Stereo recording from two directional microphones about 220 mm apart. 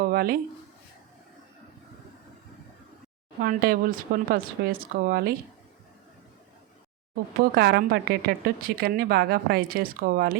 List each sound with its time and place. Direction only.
0.0 s a sound: 40° right (ahead or behind)
3.4 s a woman's voice: 40° right (ahead or behind)
7.3 s a woman's voice: 45° right (ahead or behind)